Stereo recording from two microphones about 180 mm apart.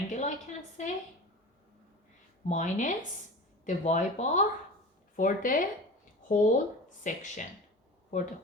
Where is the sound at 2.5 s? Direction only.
45° left (ahead or behind).